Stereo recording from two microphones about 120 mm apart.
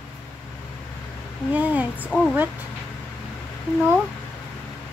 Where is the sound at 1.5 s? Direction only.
10° right (ahead or behind).